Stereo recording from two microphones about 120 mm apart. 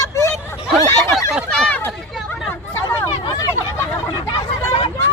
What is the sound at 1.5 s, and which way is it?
Chatter, 5° left (ahead or behind).